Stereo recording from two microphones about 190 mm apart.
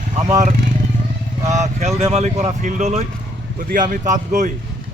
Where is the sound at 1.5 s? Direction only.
40° right (ahead or behind).